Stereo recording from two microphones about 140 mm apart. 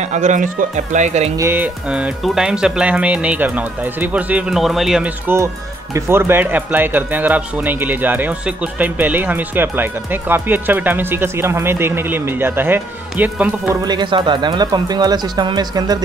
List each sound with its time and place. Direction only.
0.0 s speech: 60° right (ahead or behind)
1.3 s speech: 20° right (ahead or behind)
5.2 s speech: 15° right (ahead or behind)
13.8 s speech: 35° right (ahead or behind)